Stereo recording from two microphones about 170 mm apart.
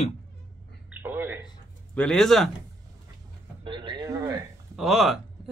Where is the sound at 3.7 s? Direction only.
30° right (ahead or behind).